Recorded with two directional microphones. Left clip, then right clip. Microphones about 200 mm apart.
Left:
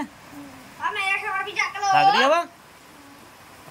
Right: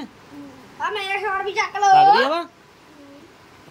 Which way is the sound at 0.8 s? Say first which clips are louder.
Right 2 dB; 30° right (ahead or behind).